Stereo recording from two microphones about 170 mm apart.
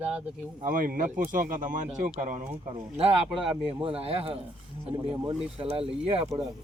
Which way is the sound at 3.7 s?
35° right (ahead or behind).